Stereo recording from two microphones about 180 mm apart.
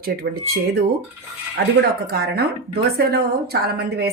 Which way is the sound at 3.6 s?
60° right (ahead or behind).